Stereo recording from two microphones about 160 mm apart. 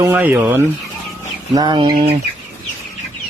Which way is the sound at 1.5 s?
25° right (ahead or behind).